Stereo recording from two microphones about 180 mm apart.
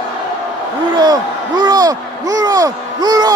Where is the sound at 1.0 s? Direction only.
25° right (ahead or behind).